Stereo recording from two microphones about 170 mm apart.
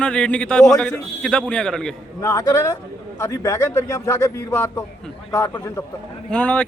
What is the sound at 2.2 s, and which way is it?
A man's voice, 20° left (ahead or behind).